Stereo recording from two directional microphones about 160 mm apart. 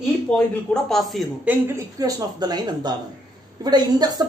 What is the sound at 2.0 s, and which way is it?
A woman's voice, 25° right (ahead or behind).